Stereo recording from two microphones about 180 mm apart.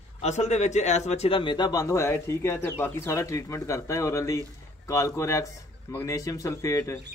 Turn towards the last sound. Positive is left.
turn(degrees=15)  # may be behind; listen again after turning